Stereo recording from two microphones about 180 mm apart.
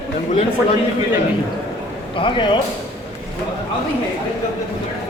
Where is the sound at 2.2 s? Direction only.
25° left (ahead or behind).